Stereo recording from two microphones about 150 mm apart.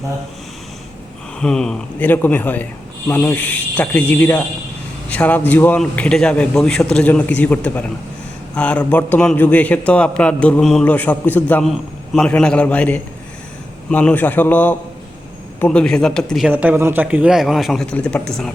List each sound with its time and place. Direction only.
1.4 s a man's voice: 5° left (ahead or behind)
16.5 s a man's voice: 10° right (ahead or behind)